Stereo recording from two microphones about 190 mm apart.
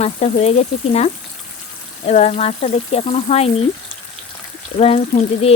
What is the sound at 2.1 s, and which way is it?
Speech, 35° left (ahead or behind).